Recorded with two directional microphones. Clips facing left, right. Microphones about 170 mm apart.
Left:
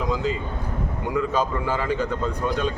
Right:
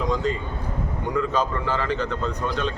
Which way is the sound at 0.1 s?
5° left (ahead or behind).